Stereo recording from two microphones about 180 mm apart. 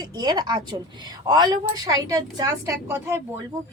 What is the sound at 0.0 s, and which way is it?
A woman's voice, 25° right (ahead or behind).